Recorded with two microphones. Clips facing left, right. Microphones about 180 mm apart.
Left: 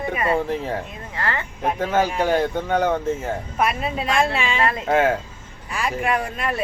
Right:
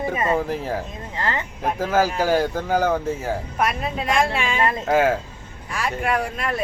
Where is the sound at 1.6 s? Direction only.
Centre (ahead or behind).